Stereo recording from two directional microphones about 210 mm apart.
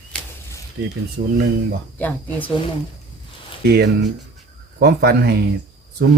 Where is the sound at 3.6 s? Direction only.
50° right (ahead or behind).